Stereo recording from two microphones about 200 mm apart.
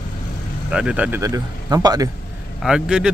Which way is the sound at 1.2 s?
20° right (ahead or behind).